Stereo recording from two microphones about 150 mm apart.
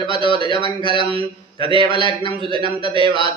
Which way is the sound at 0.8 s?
35° right (ahead or behind).